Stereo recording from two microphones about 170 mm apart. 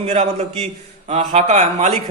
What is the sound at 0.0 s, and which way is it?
Speech, 40° right (ahead or behind).